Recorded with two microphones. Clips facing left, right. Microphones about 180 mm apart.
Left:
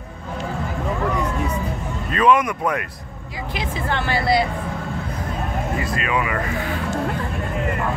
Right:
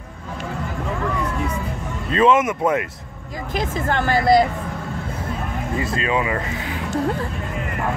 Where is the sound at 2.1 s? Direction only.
25° right (ahead or behind).